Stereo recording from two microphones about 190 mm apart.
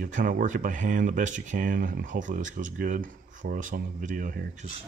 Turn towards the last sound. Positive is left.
turn(degrees=-45)  # may be behind; listen again after turning